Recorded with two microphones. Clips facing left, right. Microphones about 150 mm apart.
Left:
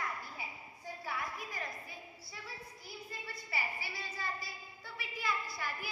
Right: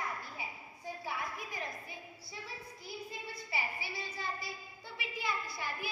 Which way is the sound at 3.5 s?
20° right (ahead or behind).